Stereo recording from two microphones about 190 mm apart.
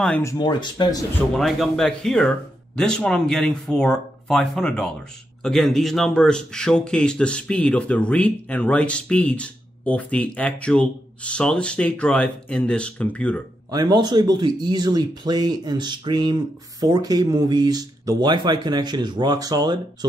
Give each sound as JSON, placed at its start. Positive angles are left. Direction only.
{"t": 0.2, "sound": "speech", "side_deg": 20}
{"t": 1.3, "sound": "speech", "side_deg": 0}
{"t": 13.7, "sound": "speech", "side_deg": -20}